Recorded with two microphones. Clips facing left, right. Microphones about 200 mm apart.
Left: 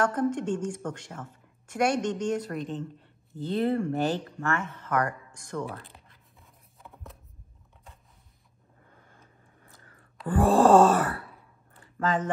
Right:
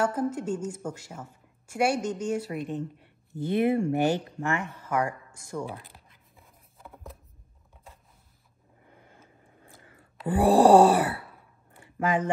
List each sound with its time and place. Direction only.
0.0 s a woman's voice: 5° right (ahead or behind)
6.3 s scissors: centre (ahead or behind)
8.9 s vehicle: 20° right (ahead or behind)
9.8 s whispering: 20° right (ahead or behind)
10.2 s a woman's voice: 15° right (ahead or behind)
11.7 s a sound: 10° right (ahead or behind)